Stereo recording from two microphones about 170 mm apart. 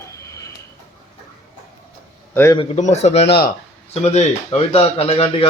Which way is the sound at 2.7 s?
40° left (ahead or behind).